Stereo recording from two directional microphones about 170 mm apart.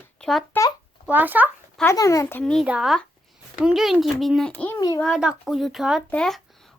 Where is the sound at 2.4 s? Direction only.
5° left (ahead or behind).